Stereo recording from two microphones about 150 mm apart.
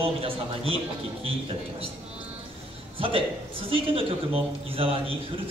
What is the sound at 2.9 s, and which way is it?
A man's voice, 35° right (ahead or behind).